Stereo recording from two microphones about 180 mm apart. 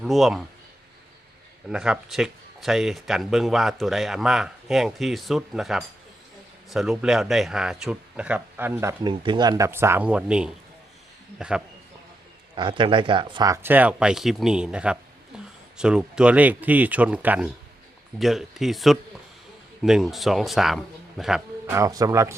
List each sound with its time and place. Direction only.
0.0 s speech: centre (ahead or behind)
1.7 s speech: 5° right (ahead or behind)
12.5 s speech: 25° right (ahead or behind); by 14.9 s 5° right (ahead or behind)
15.3 s a sound: 5° right (ahead or behind)
15.8 s speech: 5° right (ahead or behind)
21.7 s speech: 20° right (ahead or behind)